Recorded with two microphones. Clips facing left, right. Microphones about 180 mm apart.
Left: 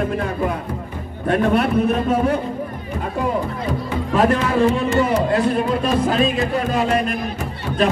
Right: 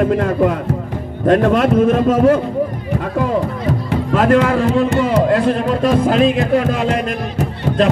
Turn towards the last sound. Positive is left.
turn(degrees=-85)